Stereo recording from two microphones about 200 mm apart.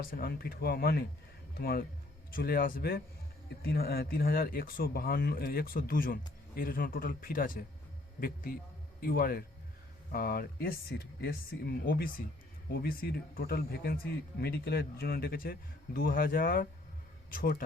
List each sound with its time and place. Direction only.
0.0 s speech: 45° left (ahead or behind)
9.0 s speech: 45° left (ahead or behind)